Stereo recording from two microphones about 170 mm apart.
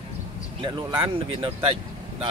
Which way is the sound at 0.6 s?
30° right (ahead or behind).